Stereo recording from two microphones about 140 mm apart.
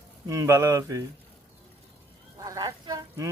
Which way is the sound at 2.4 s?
25° right (ahead or behind).